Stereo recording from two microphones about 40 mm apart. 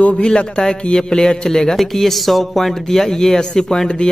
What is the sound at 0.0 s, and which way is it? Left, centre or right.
A man's voice, left.